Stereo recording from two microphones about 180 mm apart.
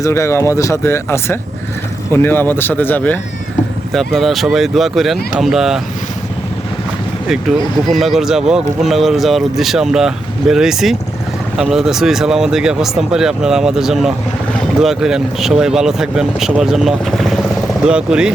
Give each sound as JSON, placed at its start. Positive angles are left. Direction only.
{"t": 0.0, "sound": "speech", "side_deg": 15}
{"t": 7.9, "sound": "speech", "side_deg": 0}